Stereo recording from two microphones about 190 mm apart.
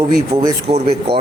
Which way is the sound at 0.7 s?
25° right (ahead or behind).